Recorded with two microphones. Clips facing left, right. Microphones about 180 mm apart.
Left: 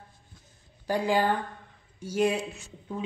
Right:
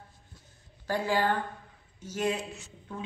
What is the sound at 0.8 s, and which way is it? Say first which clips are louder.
A woman's voice: left 3 dB; 15° left (ahead or behind).